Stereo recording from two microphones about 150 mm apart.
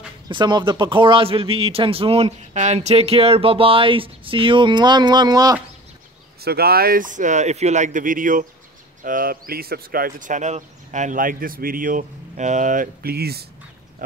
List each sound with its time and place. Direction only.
0.3 s a man's voice: 30° right (ahead or behind)
6.4 s speech: 90° right